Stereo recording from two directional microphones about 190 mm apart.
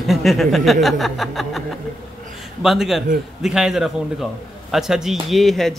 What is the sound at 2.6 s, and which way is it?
Speech, centre (ahead or behind).